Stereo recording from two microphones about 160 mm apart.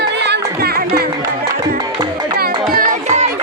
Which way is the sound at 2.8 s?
50° right (ahead or behind).